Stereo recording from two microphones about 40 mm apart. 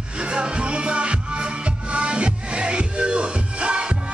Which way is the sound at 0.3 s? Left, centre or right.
Right.